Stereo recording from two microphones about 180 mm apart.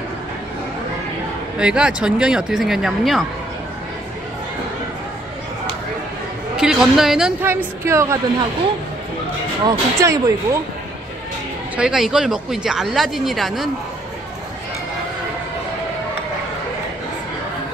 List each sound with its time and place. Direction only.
1.6 s speech: 5° right (ahead or behind)
6.5 s speech: 5° right (ahead or behind)
9.7 s speech: 20° right (ahead or behind)
11.7 s speech: 5° right (ahead or behind)